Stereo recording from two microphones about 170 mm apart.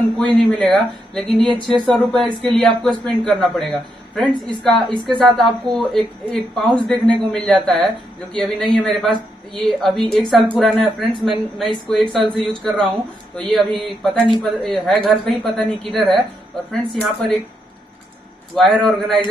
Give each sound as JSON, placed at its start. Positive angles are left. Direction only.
{"t": 0.1, "sound": "a man's voice", "side_deg": 5}
{"t": 9.1, "sound": "a woman's voice", "side_deg": -25}
{"t": 9.8, "sound": "a man's voice", "side_deg": 0}
{"t": 18.5, "sound": "a man's voice", "side_deg": 5}